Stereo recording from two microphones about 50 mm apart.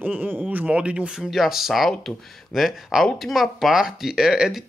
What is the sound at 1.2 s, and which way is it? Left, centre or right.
Speech, centre.